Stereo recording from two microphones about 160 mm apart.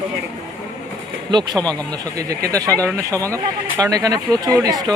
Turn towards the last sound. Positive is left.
turn(degrees=-25)  # may be behind; listen again after turning